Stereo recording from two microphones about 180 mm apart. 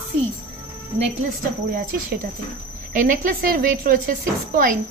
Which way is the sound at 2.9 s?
50° right (ahead or behind).